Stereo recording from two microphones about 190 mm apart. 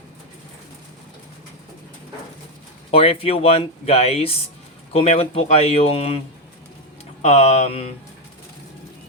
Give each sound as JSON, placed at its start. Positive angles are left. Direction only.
{"t": 2.9, "sound": "speech", "side_deg": 30}
{"t": 7.2, "sound": "speech", "side_deg": 35}